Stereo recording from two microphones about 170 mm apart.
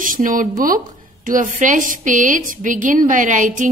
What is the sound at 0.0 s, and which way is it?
A woman's voice, 55° right (ahead or behind).